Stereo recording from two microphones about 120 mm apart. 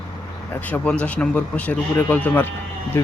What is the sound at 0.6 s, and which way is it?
Speech, 10° left (ahead or behind).